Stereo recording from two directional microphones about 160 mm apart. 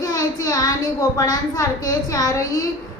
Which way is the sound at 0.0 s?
20° left (ahead or behind).